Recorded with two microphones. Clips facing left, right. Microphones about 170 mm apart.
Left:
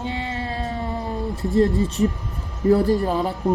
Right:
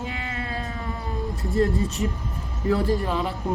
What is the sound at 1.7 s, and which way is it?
Speech, centre (ahead or behind).